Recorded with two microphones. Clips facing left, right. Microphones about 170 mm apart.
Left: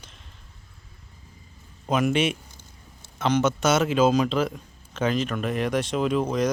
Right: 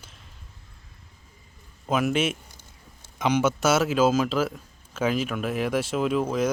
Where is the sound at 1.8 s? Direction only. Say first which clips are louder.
Left 1 dB; centre (ahead or behind).